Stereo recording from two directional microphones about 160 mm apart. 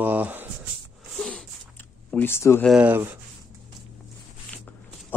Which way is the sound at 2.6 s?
5° right (ahead or behind).